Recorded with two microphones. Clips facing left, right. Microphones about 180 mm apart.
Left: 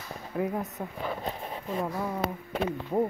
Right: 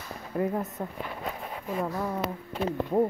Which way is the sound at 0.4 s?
Centre (ahead or behind).